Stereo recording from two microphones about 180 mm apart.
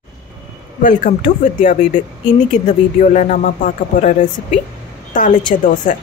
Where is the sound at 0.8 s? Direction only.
45° left (ahead or behind).